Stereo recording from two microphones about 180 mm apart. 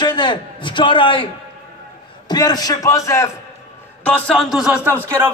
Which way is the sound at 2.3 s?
20° left (ahead or behind).